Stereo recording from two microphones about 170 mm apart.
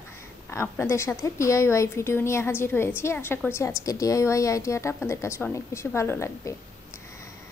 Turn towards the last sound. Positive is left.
turn(degrees=15)  # may be behind; listen again after turning